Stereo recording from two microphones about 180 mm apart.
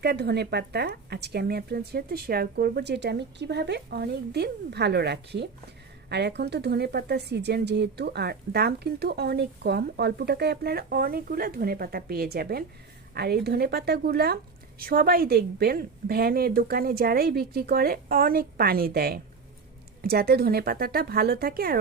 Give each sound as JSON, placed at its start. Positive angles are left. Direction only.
{"t": 0.0, "sound": "a woman's voice", "side_deg": -65}